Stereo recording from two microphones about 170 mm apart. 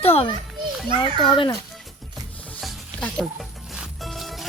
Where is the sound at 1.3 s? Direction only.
30° left (ahead or behind).